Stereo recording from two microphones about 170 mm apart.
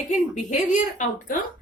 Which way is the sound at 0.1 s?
50° left (ahead or behind).